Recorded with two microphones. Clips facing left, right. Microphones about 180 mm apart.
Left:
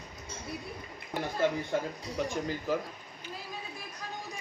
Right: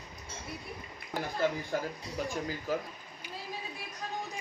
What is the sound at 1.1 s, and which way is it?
Speech, 20° left (ahead or behind).